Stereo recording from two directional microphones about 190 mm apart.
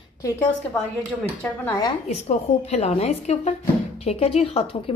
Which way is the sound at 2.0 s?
35° left (ahead or behind).